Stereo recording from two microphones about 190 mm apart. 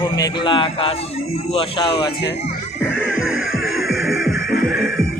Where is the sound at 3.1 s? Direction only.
90° left.